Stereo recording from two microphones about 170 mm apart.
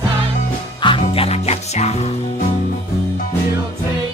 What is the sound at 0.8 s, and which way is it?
Music, 30° left (ahead or behind).